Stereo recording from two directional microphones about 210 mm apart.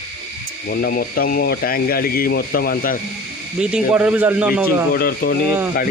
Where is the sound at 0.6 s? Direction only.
45° left (ahead or behind).